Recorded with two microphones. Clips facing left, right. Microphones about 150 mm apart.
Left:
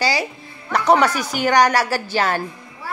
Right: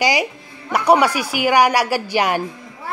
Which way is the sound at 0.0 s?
15° right (ahead or behind).